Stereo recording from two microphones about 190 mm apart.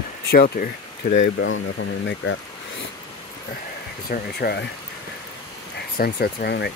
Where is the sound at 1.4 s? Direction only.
80° left.